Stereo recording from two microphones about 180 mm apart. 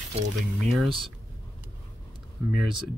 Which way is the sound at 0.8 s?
30° right (ahead or behind).